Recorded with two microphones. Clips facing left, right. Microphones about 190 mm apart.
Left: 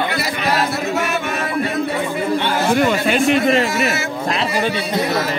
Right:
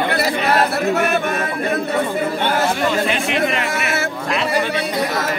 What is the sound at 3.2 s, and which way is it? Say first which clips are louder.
Speech: left 5 dB; 45° left (ahead or behind).